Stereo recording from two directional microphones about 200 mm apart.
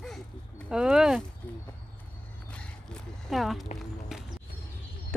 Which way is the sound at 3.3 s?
Centre (ahead or behind).